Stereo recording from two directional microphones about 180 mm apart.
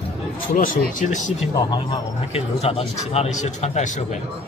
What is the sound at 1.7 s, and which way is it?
A man's voice, 30° left (ahead or behind).